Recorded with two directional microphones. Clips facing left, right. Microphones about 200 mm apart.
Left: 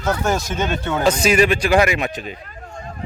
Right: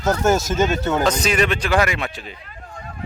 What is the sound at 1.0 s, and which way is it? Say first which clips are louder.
Speech: left 7 dB; 10° left (ahead or behind).